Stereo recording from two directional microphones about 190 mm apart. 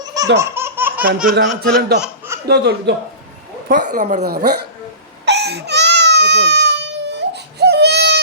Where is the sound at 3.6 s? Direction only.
45° right (ahead or behind).